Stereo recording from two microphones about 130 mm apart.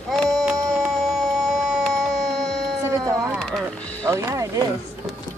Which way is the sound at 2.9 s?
25° right (ahead or behind).